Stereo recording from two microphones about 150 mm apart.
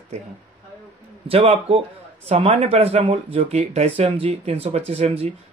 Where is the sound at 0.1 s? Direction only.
45° right (ahead or behind).